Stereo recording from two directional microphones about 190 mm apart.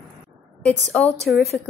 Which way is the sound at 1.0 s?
5° left (ahead or behind).